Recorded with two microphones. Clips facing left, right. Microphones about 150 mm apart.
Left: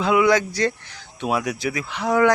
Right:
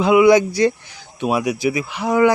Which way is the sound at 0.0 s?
15° right (ahead or behind).